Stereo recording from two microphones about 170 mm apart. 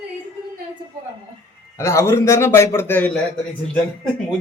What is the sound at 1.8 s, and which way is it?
Speech, 15° left (ahead or behind).